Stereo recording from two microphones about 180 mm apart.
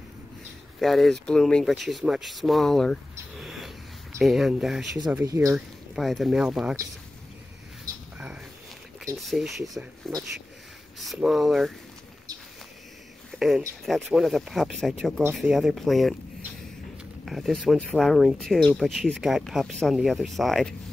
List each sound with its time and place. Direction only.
0.7 s speech: centre (ahead or behind)
5.2 s speech: 15° right (ahead or behind)
5.9 s speech: centre (ahead or behind)
7.8 s a sound: 10° right (ahead or behind)
9.2 s speech: centre (ahead or behind)
13.4 s speech: centre (ahead or behind)
17.2 s speech: centre (ahead or behind)